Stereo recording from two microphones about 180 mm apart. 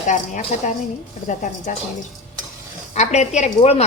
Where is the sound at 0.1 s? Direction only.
45° left (ahead or behind).